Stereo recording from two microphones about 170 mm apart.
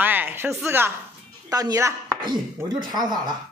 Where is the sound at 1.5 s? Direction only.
20° right (ahead or behind).